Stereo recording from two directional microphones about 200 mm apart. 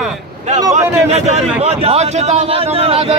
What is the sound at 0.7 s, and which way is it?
A man's voice, 35° right (ahead or behind).